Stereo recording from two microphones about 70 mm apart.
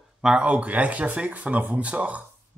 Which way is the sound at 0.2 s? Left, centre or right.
Centre.